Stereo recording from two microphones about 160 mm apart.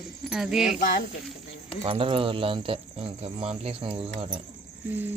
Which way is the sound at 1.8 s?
35° right (ahead or behind).